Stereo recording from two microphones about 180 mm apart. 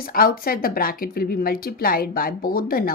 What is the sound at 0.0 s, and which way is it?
A woman's voice, 55° left (ahead or behind).